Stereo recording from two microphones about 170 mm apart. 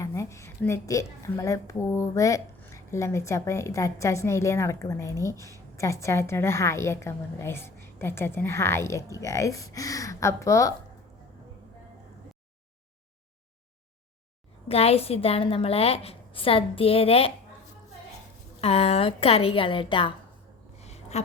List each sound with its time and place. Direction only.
0.0 s a woman's voice: 15° left (ahead or behind)
14.7 s a woman's voice: 35° left (ahead or behind)
18.6 s a woman's voice: 35° left (ahead or behind)
20.7 s a sound: 40° left (ahead or behind)